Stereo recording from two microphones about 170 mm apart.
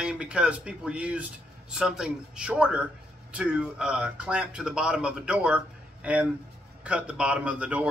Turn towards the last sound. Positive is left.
turn(degrees=-5)  # may be behind; listen again after turning